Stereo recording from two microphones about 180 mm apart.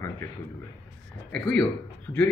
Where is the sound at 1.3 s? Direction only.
5° left (ahead or behind).